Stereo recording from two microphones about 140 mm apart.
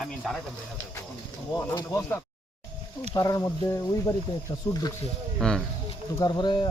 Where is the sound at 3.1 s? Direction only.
25° left (ahead or behind).